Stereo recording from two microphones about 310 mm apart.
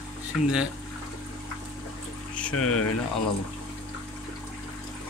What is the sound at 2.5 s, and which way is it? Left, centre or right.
Speech, left.